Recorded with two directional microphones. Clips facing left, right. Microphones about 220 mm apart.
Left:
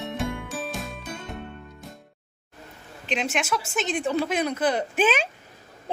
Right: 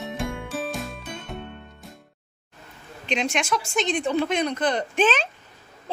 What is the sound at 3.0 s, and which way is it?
A woman's voice, 5° left (ahead or behind).